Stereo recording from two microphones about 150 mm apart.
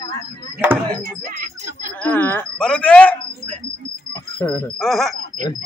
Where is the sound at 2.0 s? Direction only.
10° left (ahead or behind).